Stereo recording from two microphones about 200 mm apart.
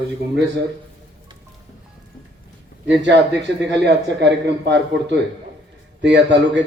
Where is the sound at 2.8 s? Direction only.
60° right (ahead or behind).